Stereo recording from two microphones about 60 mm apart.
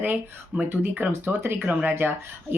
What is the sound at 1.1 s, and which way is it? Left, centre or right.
Speech, right.